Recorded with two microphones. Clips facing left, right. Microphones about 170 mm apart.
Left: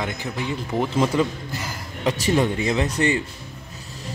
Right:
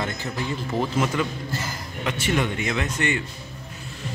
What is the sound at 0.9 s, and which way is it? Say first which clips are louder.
Speech: left 4 dB; 30° left (ahead or behind).